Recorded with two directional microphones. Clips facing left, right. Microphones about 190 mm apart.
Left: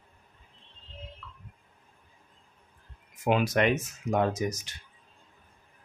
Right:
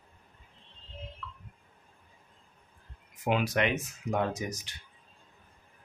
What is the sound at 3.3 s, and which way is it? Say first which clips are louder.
Speech: left 3 dB; 45° left (ahead or behind).